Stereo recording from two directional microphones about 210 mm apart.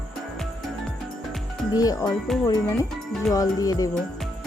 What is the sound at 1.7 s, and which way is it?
Speech, 15° left (ahead or behind).